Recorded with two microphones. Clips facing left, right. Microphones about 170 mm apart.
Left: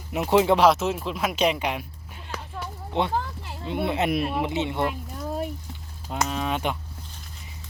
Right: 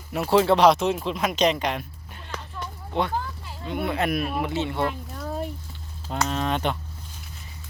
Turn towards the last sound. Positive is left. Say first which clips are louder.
# right 2 dB
turn(degrees=5)  # may be behind; listen again after turning